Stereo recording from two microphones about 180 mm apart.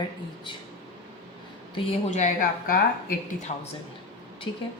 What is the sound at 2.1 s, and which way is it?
Speech, 40° left (ahead or behind).